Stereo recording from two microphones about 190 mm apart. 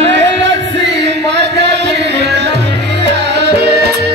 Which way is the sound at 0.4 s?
70° right (ahead or behind).